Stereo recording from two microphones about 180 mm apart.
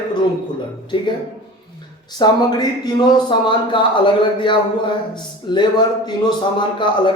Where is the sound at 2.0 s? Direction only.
25° left (ahead or behind).